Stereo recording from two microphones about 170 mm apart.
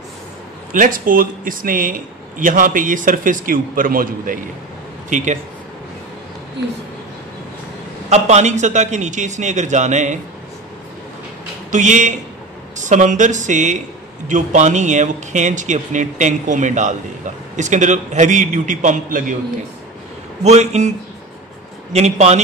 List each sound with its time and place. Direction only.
0.7 s a man's voice: 55° right (ahead or behind)
5.1 s a man's voice: 45° right (ahead or behind)
8.1 s a man's voice: 40° right (ahead or behind)
11.7 s a man's voice: 45° right (ahead or behind)
20.4 s speech: 40° right (ahead or behind)
21.9 s speech: 40° right (ahead or behind)